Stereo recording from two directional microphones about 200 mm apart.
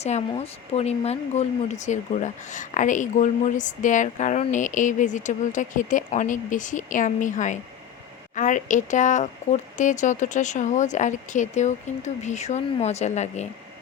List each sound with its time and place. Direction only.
0.0 s speech: 30° left (ahead or behind)